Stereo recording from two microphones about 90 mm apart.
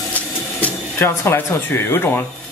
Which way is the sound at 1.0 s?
30° left (ahead or behind).